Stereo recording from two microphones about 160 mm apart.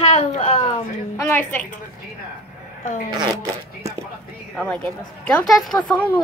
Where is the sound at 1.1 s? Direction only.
15° left (ahead or behind).